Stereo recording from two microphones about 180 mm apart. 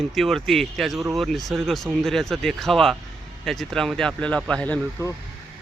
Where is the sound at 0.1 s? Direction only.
Centre (ahead or behind).